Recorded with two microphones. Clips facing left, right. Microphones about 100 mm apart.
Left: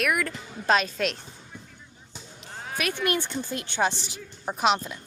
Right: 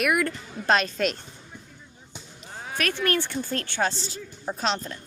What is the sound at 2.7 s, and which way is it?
Speech, 10° left (ahead or behind).